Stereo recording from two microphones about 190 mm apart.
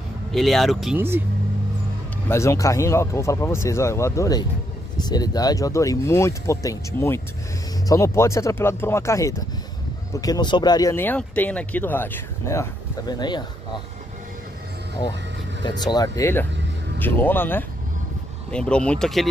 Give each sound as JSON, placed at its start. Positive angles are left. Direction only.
{"t": 0.3, "sound": "speech", "side_deg": 0}
{"t": 0.9, "sound": "speech", "side_deg": -10}
{"t": 2.2, "sound": "speech", "side_deg": 15}
{"t": 15.6, "sound": "speech", "side_deg": 20}